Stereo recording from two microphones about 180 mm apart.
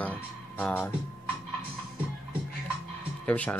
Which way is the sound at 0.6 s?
10° left (ahead or behind).